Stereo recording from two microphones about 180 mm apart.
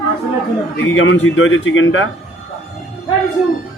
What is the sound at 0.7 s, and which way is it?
A man's voice, 90° left.